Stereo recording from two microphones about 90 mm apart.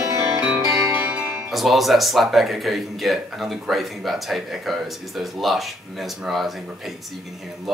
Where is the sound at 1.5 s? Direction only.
Centre (ahead or behind).